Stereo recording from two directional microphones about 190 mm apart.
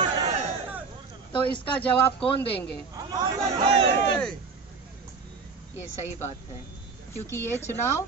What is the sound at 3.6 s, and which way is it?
Speech, 30° right (ahead or behind).